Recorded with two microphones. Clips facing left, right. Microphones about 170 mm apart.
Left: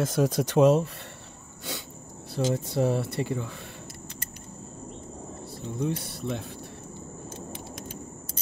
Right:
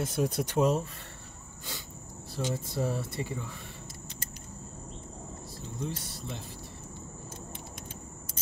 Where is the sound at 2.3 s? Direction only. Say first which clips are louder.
Left 7 dB; 70° left (ahead or behind).